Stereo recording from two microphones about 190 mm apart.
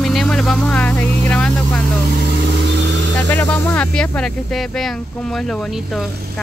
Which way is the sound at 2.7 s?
65° right (ahead or behind).